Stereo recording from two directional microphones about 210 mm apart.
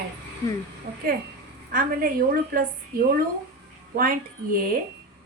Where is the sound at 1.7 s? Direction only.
45° right (ahead or behind).